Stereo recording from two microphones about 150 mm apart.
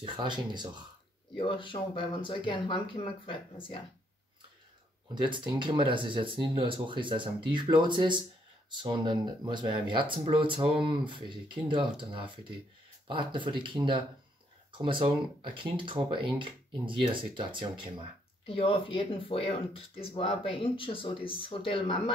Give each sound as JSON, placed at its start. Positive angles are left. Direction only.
{"t": 0.0, "sound": "speech", "side_deg": -35}
{"t": 1.3, "sound": "speech", "side_deg": 35}
{"t": 5.1, "sound": "speech", "side_deg": -30}
{"t": 18.5, "sound": "speech", "side_deg": 35}